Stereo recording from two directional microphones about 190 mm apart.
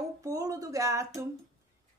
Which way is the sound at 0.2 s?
15° right (ahead or behind).